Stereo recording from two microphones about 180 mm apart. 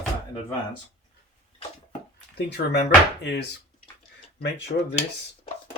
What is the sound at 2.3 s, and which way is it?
Speech, 70° left (ahead or behind).